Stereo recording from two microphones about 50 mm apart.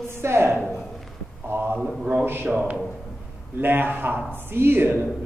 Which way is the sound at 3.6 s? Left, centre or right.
Right.